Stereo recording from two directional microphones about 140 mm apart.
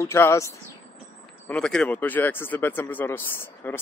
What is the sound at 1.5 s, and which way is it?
Speech, 5° left (ahead or behind).